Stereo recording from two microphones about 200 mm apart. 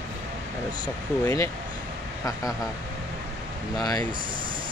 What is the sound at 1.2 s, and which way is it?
Speech, 15° left (ahead or behind).